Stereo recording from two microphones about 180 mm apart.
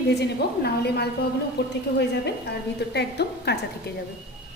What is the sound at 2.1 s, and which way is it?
A woman's voice, 70° left (ahead or behind).